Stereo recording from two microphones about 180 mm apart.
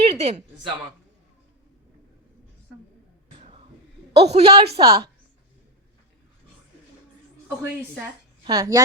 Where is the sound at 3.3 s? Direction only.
35° right (ahead or behind).